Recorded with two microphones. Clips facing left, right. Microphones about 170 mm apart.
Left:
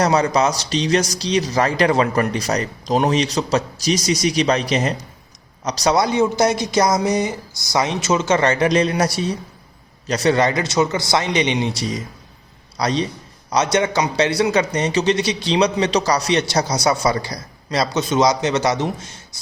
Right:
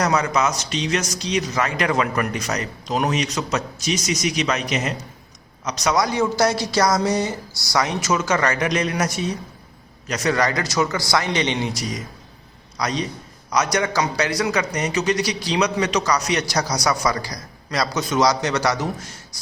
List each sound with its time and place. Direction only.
0.0 s a man's voice: 30° left (ahead or behind)
11.7 s a man's voice: 30° left (ahead or behind)